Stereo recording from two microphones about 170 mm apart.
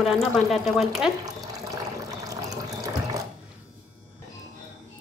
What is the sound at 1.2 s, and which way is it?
Water, 20° right (ahead or behind).